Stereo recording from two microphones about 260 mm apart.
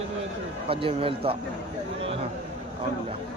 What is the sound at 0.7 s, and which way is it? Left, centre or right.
Speech, right.